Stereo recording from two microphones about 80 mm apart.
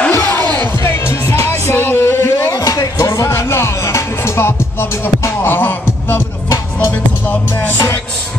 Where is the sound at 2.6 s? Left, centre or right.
Left.